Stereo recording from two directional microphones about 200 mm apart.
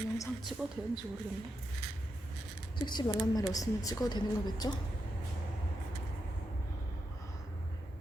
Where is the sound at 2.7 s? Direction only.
20° left (ahead or behind).